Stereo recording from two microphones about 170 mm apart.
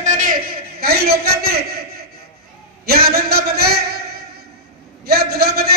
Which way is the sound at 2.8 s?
65° right (ahead or behind).